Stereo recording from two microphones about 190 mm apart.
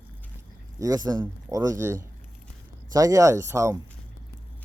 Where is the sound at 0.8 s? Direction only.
20° right (ahead or behind).